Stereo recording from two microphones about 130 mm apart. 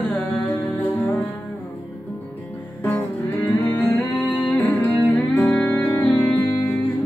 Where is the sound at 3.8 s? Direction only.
15° left (ahead or behind).